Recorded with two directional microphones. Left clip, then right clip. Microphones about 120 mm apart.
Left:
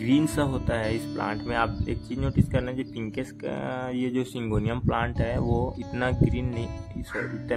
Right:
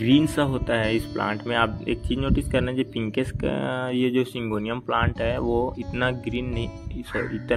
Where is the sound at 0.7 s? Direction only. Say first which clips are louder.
Right 6 dB; 25° right (ahead or behind).